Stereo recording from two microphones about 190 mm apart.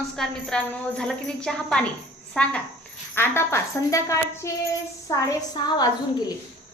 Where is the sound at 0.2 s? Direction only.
5° left (ahead or behind).